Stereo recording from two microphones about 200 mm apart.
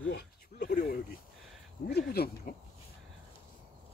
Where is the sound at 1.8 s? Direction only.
50° left (ahead or behind).